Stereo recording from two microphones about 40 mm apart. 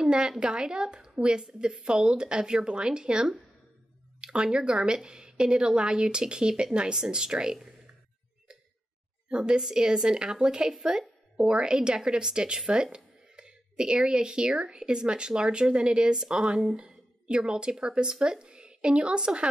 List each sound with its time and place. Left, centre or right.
0.0 s a woman's voice: centre
9.3 s a woman's voice: right